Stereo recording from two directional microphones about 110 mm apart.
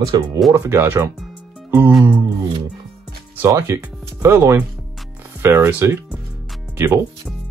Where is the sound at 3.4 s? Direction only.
25° right (ahead or behind).